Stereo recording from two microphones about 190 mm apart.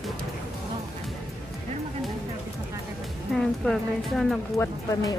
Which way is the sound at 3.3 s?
Centre (ahead or behind).